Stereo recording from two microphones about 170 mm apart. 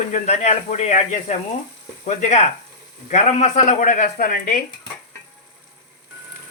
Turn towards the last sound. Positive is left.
turn(degrees=55)  # may be behind; listen again after turning